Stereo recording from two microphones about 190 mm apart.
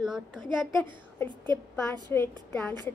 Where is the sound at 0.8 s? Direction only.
10° left (ahead or behind).